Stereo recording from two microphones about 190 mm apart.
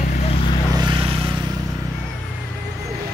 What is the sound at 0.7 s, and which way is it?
Vehicle, 25° right (ahead or behind).